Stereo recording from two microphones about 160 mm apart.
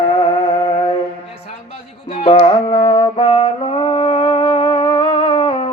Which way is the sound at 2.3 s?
35° left (ahead or behind).